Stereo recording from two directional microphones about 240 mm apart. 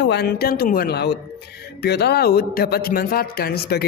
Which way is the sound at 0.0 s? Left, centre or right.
Left.